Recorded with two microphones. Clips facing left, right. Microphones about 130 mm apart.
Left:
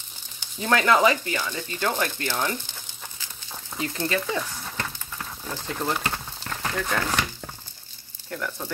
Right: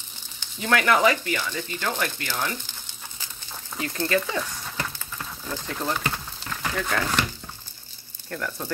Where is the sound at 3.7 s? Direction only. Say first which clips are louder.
Right 2 dB; 20° left (ahead or behind).